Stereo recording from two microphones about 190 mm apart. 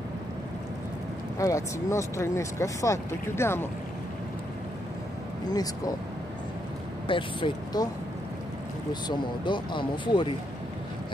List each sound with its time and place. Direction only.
1.4 s speech: 15° left (ahead or behind)
5.5 s speech: 20° left (ahead or behind)
7.1 s speech: 25° left (ahead or behind)
9.0 s speech: 25° left (ahead or behind)